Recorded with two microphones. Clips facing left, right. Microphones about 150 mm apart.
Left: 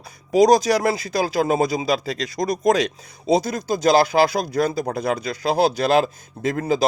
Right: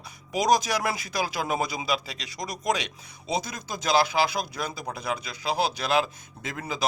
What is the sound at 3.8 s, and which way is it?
Speech, 45° left (ahead or behind).